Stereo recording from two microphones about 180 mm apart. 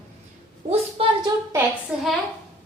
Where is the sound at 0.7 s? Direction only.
30° right (ahead or behind).